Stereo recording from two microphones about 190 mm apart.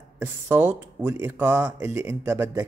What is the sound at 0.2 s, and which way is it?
Speech, 10° right (ahead or behind).